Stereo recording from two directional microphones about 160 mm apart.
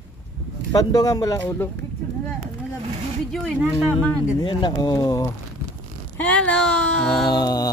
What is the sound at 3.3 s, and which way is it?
Speech, 5° left (ahead or behind).